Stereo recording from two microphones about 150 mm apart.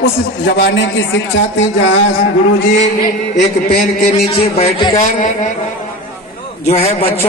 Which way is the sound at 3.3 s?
55° left (ahead or behind).